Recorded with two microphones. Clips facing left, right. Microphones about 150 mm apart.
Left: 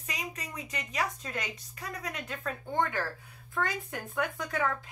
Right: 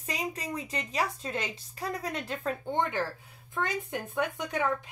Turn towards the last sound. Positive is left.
turn(degrees=-20)  # may be behind; listen again after turning